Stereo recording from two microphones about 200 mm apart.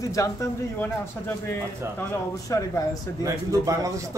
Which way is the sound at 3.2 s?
15° right (ahead or behind).